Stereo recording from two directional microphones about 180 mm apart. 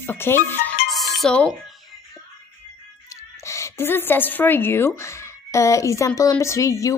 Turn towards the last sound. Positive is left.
turn(degrees=15)  # may be behind; listen again after turning